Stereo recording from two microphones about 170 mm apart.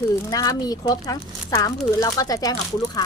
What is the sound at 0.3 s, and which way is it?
A woman's voice, 20° left (ahead or behind).